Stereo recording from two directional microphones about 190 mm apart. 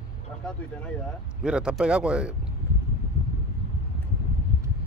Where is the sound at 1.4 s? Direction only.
5° right (ahead or behind).